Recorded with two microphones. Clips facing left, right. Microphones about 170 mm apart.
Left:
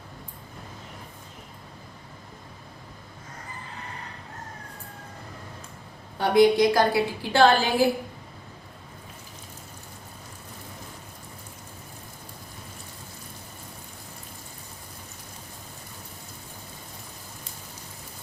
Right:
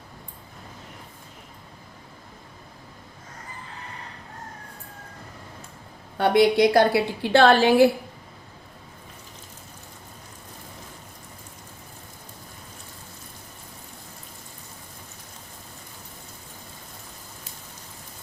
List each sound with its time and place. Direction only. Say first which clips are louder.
6.1 s a woman's voice: even; 65° right (ahead or behind)